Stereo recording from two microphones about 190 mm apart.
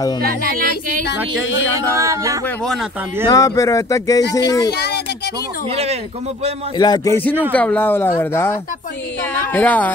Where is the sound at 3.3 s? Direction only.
15° left (ahead or behind).